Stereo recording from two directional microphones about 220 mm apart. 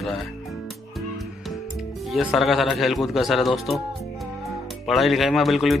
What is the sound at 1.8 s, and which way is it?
Speech, centre (ahead or behind).